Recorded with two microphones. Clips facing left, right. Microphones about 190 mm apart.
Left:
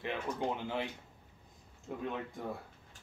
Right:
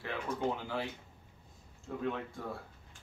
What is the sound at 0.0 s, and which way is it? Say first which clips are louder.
Speech: right 1 dB; 20° left (ahead or behind).